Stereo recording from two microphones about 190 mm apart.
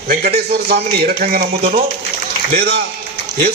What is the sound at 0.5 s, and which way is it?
A man's voice, 55° right (ahead or behind).